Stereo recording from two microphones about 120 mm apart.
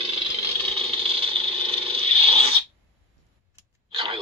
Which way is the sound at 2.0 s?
50° right (ahead or behind).